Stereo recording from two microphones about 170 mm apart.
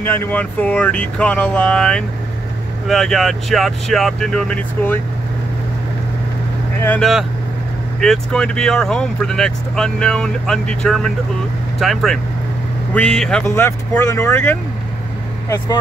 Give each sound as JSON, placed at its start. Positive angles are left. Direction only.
{"t": 0.0, "sound": "speech", "side_deg": 10}
{"t": 6.8, "sound": "speech", "side_deg": 10}
{"t": 13.7, "sound": "speech", "side_deg": 15}